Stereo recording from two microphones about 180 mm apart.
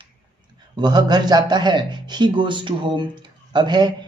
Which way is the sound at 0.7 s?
25° right (ahead or behind).